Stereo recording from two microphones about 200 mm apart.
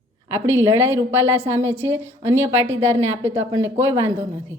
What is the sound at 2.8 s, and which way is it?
Speech, 30° right (ahead or behind).